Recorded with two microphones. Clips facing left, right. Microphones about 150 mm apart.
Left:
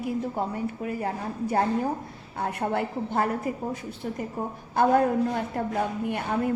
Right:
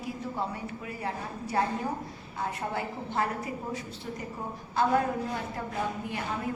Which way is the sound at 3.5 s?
45° left (ahead or behind).